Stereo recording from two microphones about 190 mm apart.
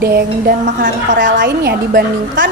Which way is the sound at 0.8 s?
45° right (ahead or behind).